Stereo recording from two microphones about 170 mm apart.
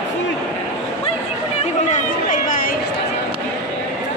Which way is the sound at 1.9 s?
50° left (ahead or behind).